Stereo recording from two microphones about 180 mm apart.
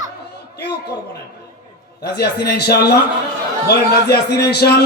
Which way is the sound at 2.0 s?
60° left (ahead or behind).